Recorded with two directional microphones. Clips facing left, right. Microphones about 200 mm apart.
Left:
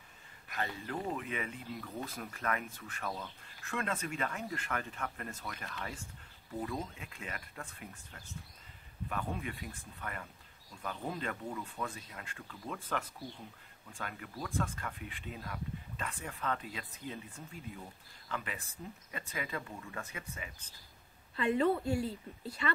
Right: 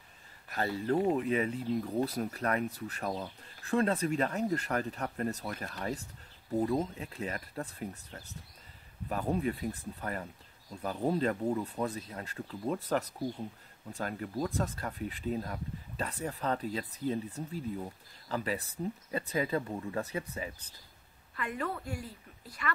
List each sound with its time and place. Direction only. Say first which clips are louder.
0.5 s speech: right 8 dB; 35° right (ahead or behind)
21.4 s a woman's voice: left 7 dB; 25° left (ahead or behind)